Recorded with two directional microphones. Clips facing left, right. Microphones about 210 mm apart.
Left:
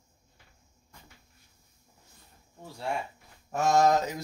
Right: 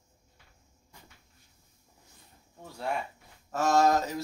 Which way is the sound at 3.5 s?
15° left (ahead or behind).